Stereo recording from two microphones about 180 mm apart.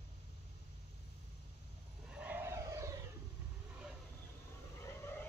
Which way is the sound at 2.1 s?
10° right (ahead or behind).